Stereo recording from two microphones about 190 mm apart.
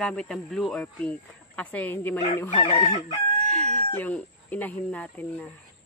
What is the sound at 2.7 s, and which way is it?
Chicken, 35° left (ahead or behind).